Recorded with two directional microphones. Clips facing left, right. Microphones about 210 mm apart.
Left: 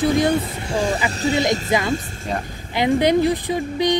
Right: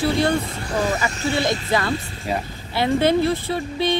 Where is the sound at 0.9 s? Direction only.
15° left (ahead or behind).